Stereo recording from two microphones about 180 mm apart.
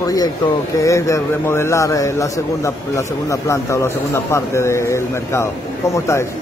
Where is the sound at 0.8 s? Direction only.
15° left (ahead or behind).